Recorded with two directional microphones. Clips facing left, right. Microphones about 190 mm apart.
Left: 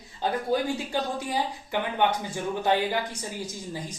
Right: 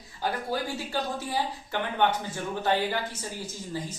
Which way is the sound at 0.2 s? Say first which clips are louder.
Left 4 dB; 20° left (ahead or behind).